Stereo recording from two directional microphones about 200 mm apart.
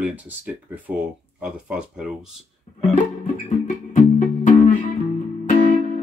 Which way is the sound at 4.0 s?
35° left (ahead or behind).